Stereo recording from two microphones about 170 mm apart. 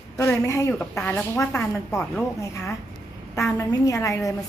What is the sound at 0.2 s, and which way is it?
A woman's voice, 15° left (ahead or behind).